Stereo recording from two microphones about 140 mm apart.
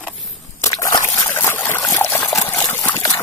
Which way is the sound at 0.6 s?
25° left (ahead or behind).